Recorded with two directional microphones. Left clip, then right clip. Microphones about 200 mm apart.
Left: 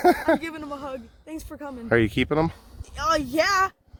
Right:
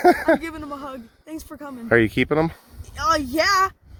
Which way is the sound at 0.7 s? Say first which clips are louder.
Right 1 dB; 15° left (ahead or behind).